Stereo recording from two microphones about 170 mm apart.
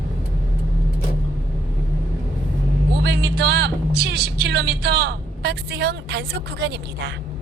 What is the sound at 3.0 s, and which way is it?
Speech, 80° right.